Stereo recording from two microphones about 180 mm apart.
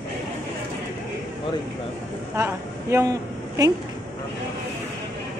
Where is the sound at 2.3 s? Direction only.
15° right (ahead or behind).